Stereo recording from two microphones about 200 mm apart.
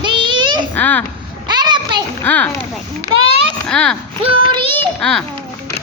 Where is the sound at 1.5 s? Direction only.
20° right (ahead or behind).